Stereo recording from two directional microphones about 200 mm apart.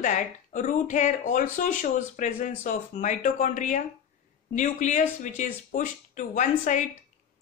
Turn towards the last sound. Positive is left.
turn(degrees=40)  # may be behind; listen again after turning